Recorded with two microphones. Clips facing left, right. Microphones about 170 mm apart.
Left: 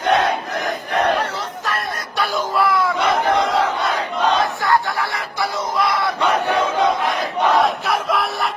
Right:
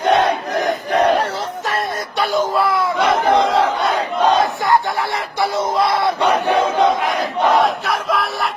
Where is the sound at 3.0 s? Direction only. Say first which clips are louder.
Right 6 dB; centre (ahead or behind).